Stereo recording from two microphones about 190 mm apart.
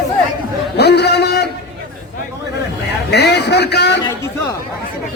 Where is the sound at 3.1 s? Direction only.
60° left (ahead or behind).